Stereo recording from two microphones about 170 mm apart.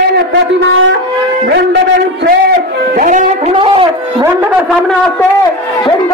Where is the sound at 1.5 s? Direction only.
80° right.